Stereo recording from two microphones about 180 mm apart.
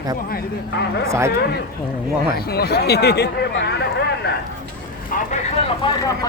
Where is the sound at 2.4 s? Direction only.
60° left (ahead or behind).